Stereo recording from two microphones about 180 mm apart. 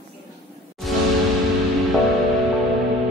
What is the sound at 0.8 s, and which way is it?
Music, centre (ahead or behind).